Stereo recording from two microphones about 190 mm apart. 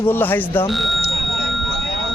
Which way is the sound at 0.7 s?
Centre (ahead or behind).